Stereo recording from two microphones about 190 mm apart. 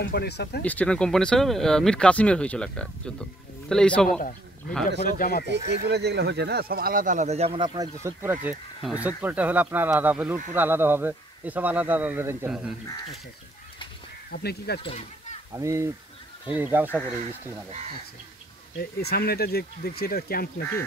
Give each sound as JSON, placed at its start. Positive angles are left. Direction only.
{"t": 0.0, "sound": "speech", "side_deg": 55}
{"t": 0.7, "sound": "speech", "side_deg": 5}
{"t": 4.2, "sound": "a man's voice", "side_deg": 45}
{"t": 5.5, "sound": "speech", "side_deg": -60}
{"t": 14.3, "sound": "speech", "side_deg": 55}
{"t": 14.8, "sound": "speech", "side_deg": 30}
{"t": 15.5, "sound": "speech", "side_deg": -15}
{"t": 18.8, "sound": "speech", "side_deg": 55}